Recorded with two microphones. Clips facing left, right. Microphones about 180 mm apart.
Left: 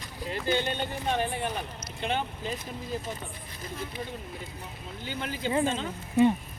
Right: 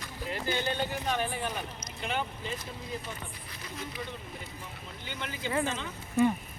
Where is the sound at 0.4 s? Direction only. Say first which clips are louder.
Left 3 dB; 25° left (ahead or behind).